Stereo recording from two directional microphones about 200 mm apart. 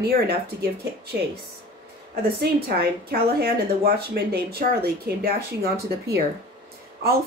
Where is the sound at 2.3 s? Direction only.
50° right (ahead or behind).